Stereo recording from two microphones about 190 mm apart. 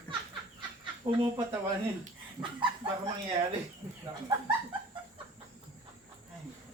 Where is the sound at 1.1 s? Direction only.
20° right (ahead or behind).